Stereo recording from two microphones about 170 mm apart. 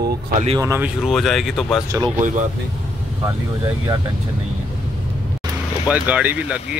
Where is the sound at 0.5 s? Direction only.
15° right (ahead or behind).